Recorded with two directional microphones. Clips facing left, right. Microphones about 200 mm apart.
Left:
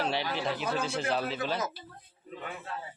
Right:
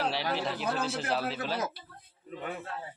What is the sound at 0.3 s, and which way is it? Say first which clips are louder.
Speech: even; centre (ahead or behind).